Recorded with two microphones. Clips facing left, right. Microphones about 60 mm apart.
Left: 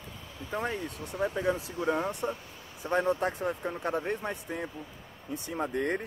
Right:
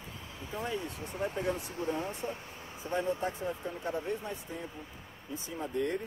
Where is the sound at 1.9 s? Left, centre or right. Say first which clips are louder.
Left 5 dB; left.